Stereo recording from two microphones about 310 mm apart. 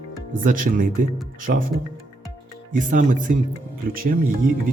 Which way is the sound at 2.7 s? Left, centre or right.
Right.